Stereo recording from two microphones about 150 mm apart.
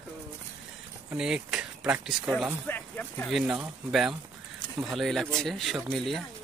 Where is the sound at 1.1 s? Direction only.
5° right (ahead or behind).